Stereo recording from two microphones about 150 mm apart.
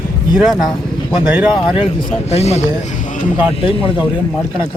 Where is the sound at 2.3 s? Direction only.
45° left (ahead or behind).